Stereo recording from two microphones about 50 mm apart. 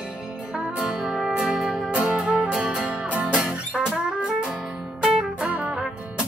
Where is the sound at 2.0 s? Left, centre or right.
Right.